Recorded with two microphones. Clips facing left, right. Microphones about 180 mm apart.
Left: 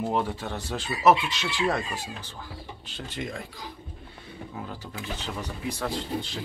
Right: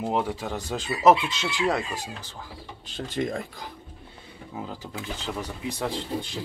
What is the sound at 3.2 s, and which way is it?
Speech, 45° right (ahead or behind).